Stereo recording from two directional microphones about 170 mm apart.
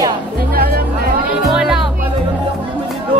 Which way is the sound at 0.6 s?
65° right (ahead or behind).